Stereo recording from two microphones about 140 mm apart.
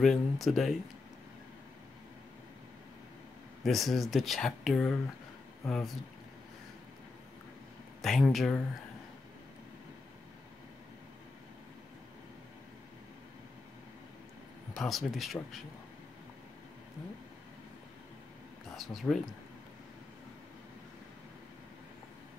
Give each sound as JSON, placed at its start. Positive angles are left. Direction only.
{"t": 0.0, "sound": "speech", "side_deg": 0}
{"t": 3.6, "sound": "speech", "side_deg": 0}
{"t": 8.0, "sound": "speech", "side_deg": 0}
{"t": 14.8, "sound": "speech", "side_deg": 0}
{"t": 18.8, "sound": "speech", "side_deg": 0}